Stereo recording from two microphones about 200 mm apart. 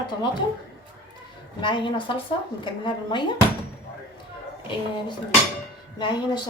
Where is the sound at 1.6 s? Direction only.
25° left (ahead or behind).